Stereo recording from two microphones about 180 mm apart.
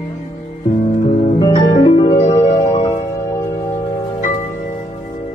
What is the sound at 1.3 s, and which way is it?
Music, 20° left (ahead or behind).